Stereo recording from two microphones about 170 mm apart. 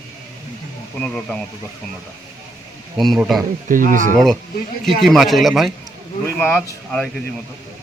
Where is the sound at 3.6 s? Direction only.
50° right (ahead or behind).